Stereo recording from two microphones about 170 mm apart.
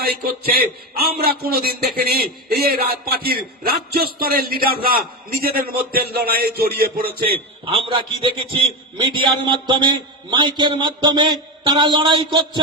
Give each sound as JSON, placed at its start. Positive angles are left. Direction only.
{"t": 0.0, "sound": "a man's voice", "side_deg": -65}
{"t": 7.6, "sound": "a man's voice", "side_deg": -35}